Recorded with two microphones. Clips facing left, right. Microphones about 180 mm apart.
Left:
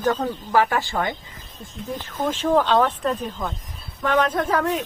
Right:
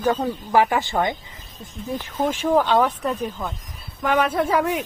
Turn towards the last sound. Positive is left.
turn(degrees=-10)  # may be behind; listen again after turning